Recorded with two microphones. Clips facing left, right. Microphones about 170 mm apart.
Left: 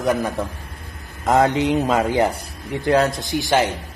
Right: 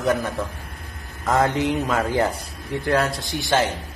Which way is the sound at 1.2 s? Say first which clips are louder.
Left 3 dB; 20° left (ahead or behind).